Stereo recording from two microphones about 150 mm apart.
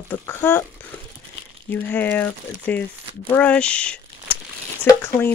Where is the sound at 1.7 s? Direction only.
15° left (ahead or behind).